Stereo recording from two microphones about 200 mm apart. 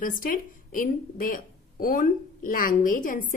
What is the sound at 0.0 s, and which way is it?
A woman's voice, 45° left (ahead or behind).